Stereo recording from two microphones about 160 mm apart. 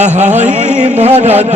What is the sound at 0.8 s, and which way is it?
Music, 45° right (ahead or behind).